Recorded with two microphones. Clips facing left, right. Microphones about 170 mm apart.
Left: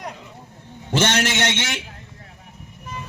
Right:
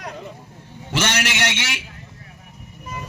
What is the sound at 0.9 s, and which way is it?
Speech, 25° left (ahead or behind).